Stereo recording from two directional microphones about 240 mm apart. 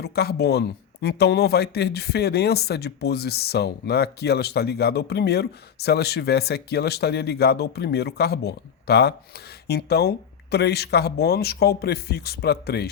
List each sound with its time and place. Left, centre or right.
0.0 s speech: left